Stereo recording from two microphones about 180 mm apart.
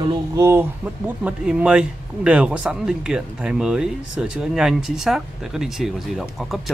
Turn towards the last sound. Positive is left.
turn(degrees=0)  # may be behind; listen again after turning